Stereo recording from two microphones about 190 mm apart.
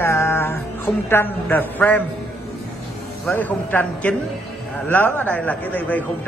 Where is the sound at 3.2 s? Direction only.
10° left (ahead or behind).